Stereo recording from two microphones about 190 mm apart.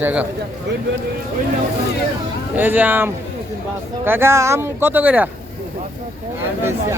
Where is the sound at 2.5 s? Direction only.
10° right (ahead or behind).